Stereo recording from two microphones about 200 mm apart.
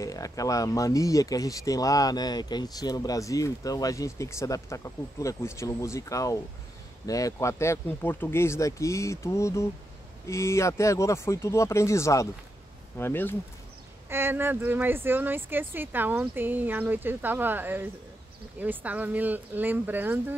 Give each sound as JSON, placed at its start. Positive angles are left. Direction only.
{"t": 0.0, "sound": "speech", "side_deg": 15}
{"t": 14.0, "sound": "speech", "side_deg": -10}